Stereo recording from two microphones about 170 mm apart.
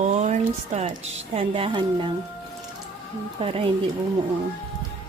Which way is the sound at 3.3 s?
35° right (ahead or behind).